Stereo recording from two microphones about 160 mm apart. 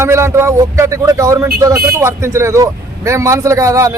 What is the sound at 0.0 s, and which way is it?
A man's voice, 15° right (ahead or behind).